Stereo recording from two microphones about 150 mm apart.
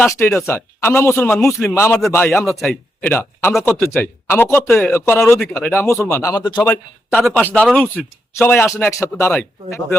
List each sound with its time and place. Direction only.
0.0 s a man's voice: 15° left (ahead or behind)
2.5 s speech: centre (ahead or behind)
3.0 s a man's voice: 15° left (ahead or behind)
6.6 s a man's voice: 15° left (ahead or behind)
7.2 s a man's voice: centre (ahead or behind)